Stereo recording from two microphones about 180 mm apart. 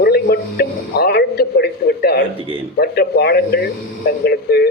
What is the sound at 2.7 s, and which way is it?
Speech, 60° left (ahead or behind).